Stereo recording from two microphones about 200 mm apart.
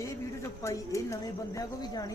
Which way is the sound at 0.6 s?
15° left (ahead or behind).